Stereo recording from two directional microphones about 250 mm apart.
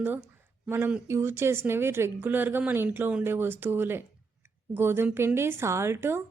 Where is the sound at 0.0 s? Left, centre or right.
Centre.